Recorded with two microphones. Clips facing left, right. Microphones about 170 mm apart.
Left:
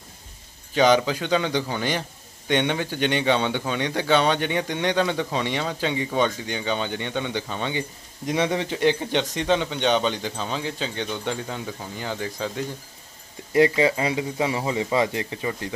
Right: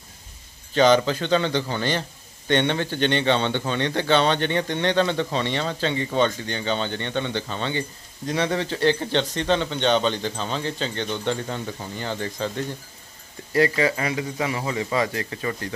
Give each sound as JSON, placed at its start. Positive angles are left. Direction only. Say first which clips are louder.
{"t": 0.7, "sound": "a man's voice", "louder": "right 1 dB", "side_deg": 10}
{"t": 13.5, "sound": "speech", "louder": "left 2 dB", "side_deg": 20}